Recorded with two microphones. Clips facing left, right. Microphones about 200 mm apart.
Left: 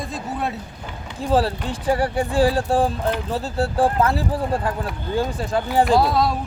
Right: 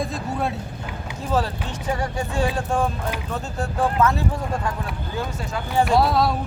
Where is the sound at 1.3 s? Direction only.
35° left (ahead or behind).